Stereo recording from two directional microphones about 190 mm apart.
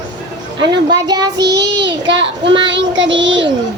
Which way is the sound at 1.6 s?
65° right (ahead or behind).